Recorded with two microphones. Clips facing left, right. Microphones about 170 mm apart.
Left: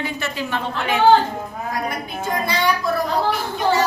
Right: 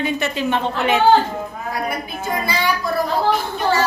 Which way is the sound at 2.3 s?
5° right (ahead or behind).